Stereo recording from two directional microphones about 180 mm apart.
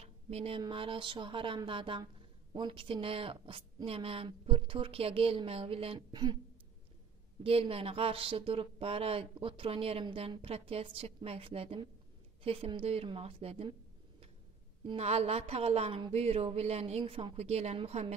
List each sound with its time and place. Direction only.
0.0 s a woman's voice: 35° right (ahead or behind)
7.4 s a woman's voice: 30° right (ahead or behind)
14.9 s a woman's voice: 35° right (ahead or behind)